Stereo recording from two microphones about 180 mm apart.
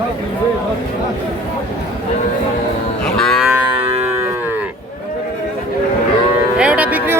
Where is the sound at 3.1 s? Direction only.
Centre (ahead or behind).